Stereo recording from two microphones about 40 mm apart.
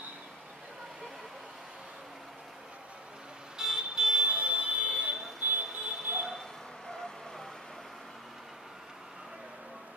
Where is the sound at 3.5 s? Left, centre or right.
Centre; by 5.1 s right.